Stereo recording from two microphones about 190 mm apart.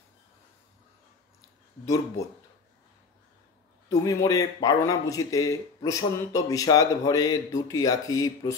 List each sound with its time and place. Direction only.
3.9 s a man's voice: 15° left (ahead or behind)